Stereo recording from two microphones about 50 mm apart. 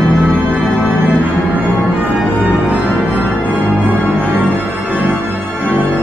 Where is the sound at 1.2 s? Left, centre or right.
Right.